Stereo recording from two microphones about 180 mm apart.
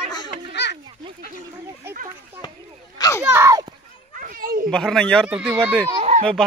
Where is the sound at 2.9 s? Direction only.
20° left (ahead or behind).